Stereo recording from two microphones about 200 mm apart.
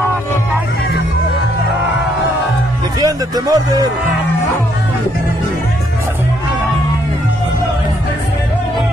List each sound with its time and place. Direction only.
3.0 s speech: 20° right (ahead or behind)